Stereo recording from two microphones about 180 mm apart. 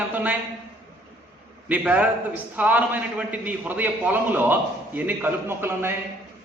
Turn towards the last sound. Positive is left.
turn(degrees=-10)  # may be behind; listen again after turning